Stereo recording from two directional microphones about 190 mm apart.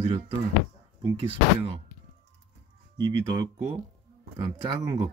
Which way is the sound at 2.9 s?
20° right (ahead or behind).